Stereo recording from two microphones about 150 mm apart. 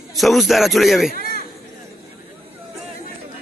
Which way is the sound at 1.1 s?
70° left (ahead or behind).